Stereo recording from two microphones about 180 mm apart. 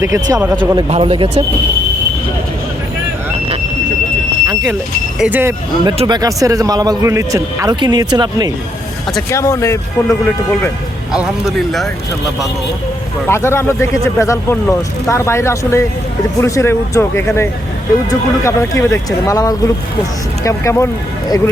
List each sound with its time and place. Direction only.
0.0 s a man's voice: 15° right (ahead or behind)
5.2 s speech: 10° right (ahead or behind)
5.8 s a man's voice: 25° right (ahead or behind)
9.3 s speech: 15° left (ahead or behind)
11.1 s speech: 5° right (ahead or behind)
13.2 s speech: 15° left (ahead or behind)